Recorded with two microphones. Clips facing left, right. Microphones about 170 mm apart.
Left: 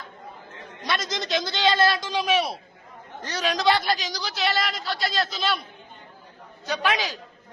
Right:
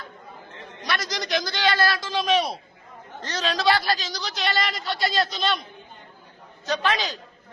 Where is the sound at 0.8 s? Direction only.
25° left (ahead or behind); by 5.6 s 5° left (ahead or behind).